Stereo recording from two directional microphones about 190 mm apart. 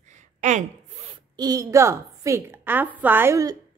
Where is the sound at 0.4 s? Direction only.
40° right (ahead or behind).